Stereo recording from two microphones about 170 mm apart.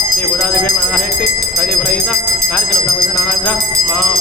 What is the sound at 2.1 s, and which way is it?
Speech, centre (ahead or behind).